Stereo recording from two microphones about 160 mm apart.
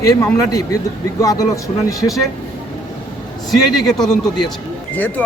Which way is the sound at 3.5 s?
Centre (ahead or behind).